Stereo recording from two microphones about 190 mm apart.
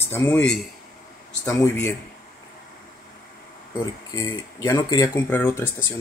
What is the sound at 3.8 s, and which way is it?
Speech, 15° left (ahead or behind).